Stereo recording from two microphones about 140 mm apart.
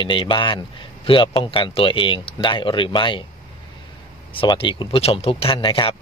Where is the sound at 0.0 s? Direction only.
35° left (ahead or behind).